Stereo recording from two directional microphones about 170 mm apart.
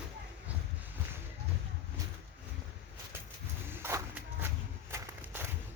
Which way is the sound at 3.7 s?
15° right (ahead or behind).